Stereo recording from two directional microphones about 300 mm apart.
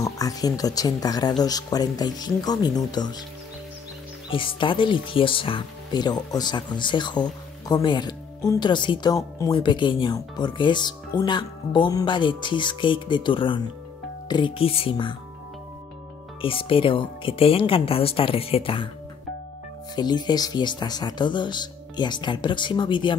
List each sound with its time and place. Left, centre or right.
0.0 s speech: centre
4.3 s speech: centre
16.3 s speech: centre
20.0 s speech: centre